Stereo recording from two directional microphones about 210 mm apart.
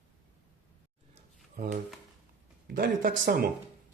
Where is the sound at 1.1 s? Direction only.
35° right (ahead or behind).